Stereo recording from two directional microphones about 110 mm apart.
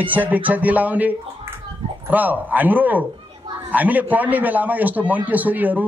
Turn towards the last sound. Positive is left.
turn(degrees=-15)  # may be behind; listen again after turning